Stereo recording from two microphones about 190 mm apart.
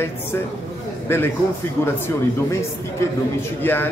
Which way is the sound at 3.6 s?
10° left (ahead or behind).